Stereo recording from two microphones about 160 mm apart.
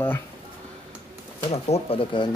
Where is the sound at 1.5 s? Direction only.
40° left (ahead or behind).